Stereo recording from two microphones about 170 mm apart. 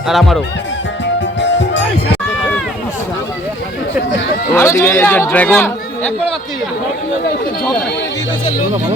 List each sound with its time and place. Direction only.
0.1 s speech: centre (ahead or behind)
1.4 s music: 90° left
4.5 s speech: 15° left (ahead or behind)